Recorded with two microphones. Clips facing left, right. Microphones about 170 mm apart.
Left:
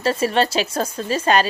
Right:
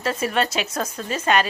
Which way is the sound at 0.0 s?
30° left (ahead or behind).